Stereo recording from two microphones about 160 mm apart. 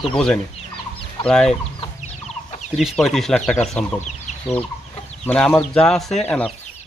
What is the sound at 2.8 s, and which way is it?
Speech, centre (ahead or behind).